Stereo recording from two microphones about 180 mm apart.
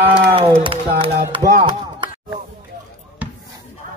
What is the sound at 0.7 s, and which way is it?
Speech, 30° right (ahead or behind).